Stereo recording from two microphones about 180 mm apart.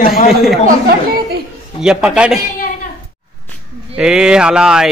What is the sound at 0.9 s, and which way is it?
Chatter, 60° right (ahead or behind).